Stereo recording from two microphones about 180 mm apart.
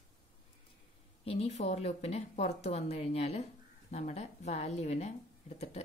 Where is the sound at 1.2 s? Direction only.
35° left (ahead or behind).